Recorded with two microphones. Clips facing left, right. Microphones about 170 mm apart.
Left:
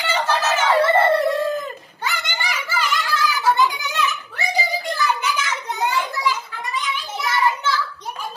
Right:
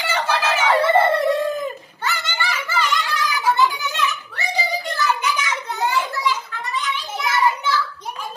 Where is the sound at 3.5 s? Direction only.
15° left (ahead or behind).